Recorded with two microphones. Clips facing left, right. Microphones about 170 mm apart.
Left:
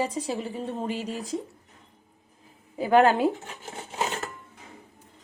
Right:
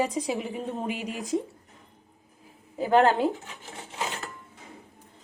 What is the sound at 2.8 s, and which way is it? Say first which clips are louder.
Speech: left 1 dB; 10° left (ahead or behind).